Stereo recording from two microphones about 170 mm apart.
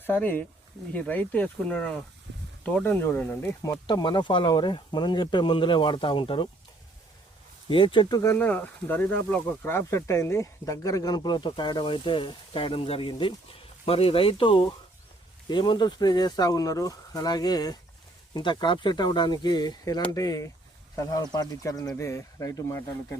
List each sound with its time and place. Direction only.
0.0 s speech: 10° left (ahead or behind); by 6.5 s 30° left (ahead or behind)
7.7 s speech: 30° left (ahead or behind)
8.2 s speech: 15° left (ahead or behind)